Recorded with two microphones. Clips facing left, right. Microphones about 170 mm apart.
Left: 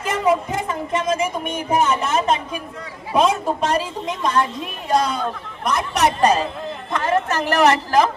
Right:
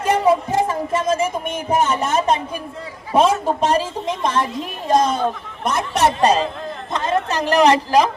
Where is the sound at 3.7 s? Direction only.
40° right (ahead or behind).